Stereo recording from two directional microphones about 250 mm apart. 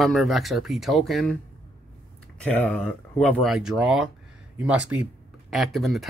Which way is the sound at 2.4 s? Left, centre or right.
Centre.